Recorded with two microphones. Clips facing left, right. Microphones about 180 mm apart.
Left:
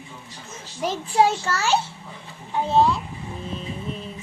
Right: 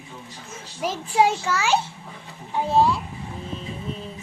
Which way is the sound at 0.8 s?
5° right (ahead or behind).